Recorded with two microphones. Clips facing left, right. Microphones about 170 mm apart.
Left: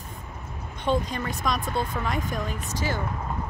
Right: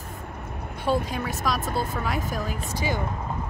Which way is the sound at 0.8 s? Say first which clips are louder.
Even; 5° right (ahead or behind).